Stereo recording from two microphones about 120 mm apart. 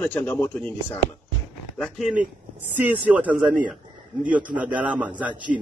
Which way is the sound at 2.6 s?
15° right (ahead or behind).